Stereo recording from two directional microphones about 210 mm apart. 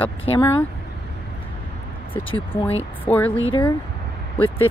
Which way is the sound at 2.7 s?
30° left (ahead or behind).